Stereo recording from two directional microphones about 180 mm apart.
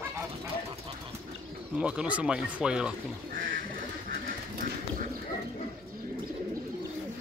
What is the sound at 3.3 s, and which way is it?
Speech, 55° right (ahead or behind).